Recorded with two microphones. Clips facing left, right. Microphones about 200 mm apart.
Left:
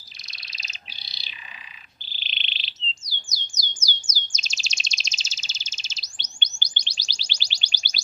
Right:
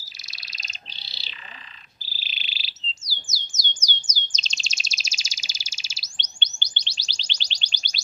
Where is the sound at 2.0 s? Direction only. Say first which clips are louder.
Left 1 dB; 5° right (ahead or behind).